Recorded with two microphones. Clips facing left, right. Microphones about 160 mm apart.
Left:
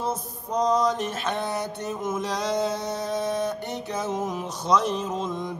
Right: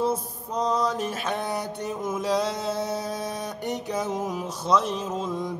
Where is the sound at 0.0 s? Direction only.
5° right (ahead or behind).